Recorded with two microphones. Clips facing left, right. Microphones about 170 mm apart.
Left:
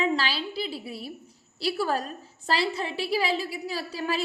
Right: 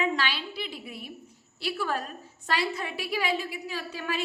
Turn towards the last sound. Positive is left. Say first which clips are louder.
# left 3 dB
turn(degrees=35)  # may be behind; listen again after turning